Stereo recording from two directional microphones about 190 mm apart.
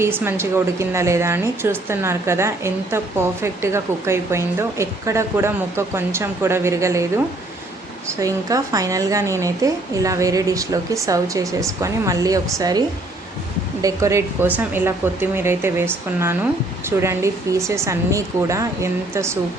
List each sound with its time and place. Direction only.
0.0 s a woman's voice: 10° right (ahead or behind)
8.2 s a woman's voice: 15° right (ahead or behind)
13.8 s a woman's voice: 15° right (ahead or behind)